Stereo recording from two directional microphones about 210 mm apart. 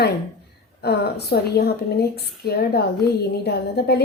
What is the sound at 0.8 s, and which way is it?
A woman's voice, 50° left (ahead or behind).